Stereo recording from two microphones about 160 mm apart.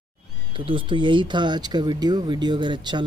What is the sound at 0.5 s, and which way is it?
Speech, 35° right (ahead or behind).